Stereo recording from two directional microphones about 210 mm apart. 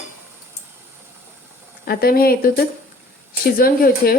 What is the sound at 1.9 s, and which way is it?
A woman's voice, 45° left (ahead or behind).